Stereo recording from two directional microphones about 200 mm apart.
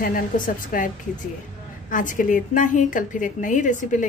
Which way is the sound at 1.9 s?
40° left (ahead or behind).